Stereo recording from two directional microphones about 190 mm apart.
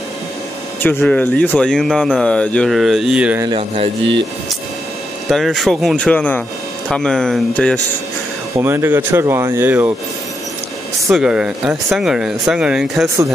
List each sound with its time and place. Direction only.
0.8 s speech: 10° left (ahead or behind)
3.4 s speech: 30° right (ahead or behind)
5.3 s speech: centre (ahead or behind)
8.5 s speech: 10° right (ahead or behind)
11.1 s speech: 5° right (ahead or behind)